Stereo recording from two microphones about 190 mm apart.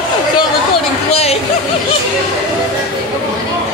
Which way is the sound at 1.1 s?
35° left (ahead or behind).